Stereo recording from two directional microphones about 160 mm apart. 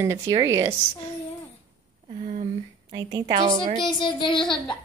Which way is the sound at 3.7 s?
30° left (ahead or behind).